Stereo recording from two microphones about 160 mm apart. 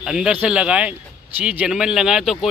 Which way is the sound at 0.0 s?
5° right (ahead or behind).